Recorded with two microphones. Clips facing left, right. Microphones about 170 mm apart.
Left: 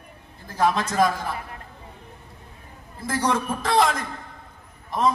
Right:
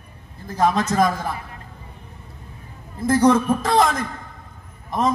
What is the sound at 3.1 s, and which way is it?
A man's voice, 45° right (ahead or behind).